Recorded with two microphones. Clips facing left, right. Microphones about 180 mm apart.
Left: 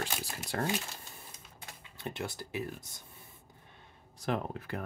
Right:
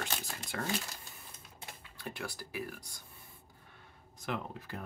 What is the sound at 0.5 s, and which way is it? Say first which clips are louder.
Speech: left 5 dB; 40° left (ahead or behind).